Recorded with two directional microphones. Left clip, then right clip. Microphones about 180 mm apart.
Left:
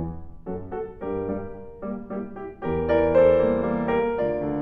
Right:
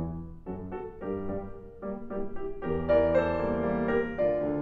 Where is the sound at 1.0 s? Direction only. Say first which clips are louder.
Left 6 dB; 25° left (ahead or behind).